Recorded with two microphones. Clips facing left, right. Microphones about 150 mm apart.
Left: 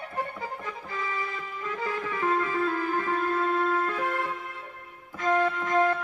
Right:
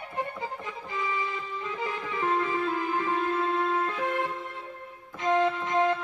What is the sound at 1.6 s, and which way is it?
Music, 20° right (ahead or behind).